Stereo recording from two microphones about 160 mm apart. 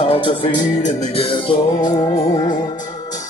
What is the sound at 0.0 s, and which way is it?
Music, 35° left (ahead or behind).